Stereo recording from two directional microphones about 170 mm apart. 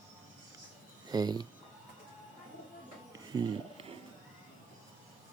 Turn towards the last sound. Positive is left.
turn(degrees=-30)  # may be behind; listen again after turning